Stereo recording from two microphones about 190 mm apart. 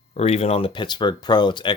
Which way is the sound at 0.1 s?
35° left (ahead or behind).